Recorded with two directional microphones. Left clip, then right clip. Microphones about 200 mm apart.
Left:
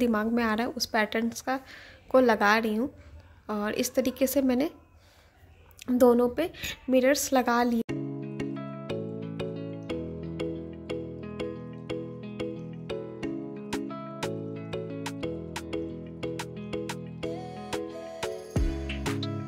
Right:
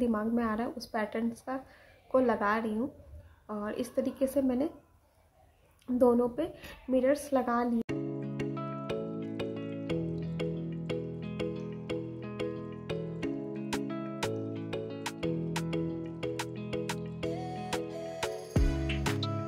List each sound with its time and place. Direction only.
0.0 s a woman's voice: 25° left (ahead or behind)
5.9 s a woman's voice: 25° left (ahead or behind)
7.8 s music: centre (ahead or behind)